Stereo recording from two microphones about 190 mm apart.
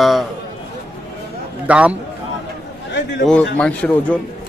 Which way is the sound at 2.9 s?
65° left (ahead or behind).